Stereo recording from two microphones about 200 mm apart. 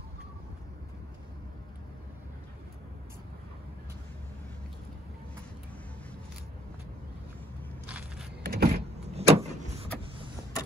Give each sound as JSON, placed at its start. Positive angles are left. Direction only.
{"t": 7.8, "sound": "crackle", "side_deg": -5}
{"t": 8.4, "sound": "power windows", "side_deg": -50}
{"t": 9.1, "sound": "vehicle", "side_deg": -30}